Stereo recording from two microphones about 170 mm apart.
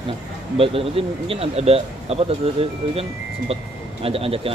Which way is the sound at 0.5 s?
35° right (ahead or behind).